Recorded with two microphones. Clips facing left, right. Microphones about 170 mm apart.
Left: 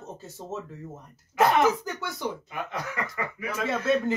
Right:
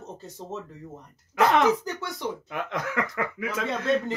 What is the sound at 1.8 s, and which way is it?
Speech, centre (ahead or behind).